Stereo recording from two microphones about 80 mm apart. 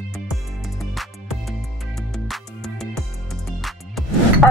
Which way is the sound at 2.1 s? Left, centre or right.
Centre.